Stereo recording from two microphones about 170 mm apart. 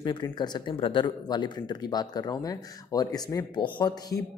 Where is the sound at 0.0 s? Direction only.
25° left (ahead or behind).